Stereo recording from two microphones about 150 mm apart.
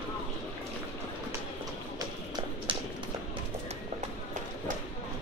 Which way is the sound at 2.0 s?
30° right (ahead or behind).